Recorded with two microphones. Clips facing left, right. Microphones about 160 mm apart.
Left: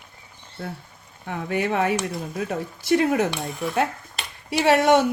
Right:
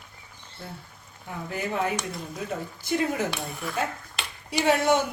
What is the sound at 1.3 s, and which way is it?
Speech, 90° left.